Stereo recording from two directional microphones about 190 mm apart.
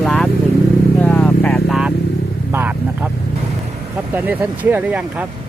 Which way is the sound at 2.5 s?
10° right (ahead or behind).